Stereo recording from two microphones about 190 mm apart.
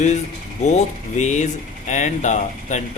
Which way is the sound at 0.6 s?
40° left (ahead or behind).